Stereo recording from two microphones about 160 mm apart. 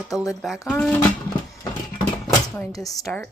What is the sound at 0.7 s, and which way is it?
Speech, 5° left (ahead or behind).